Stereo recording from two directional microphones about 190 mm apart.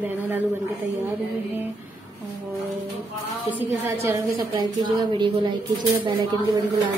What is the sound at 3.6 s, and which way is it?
A woman's voice, 15° right (ahead or behind).